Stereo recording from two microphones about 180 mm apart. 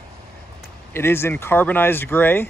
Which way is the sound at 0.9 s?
15° left (ahead or behind).